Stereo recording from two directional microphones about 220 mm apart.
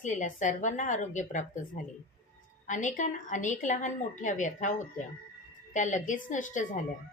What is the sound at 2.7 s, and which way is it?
A woman's voice, 35° left (ahead or behind).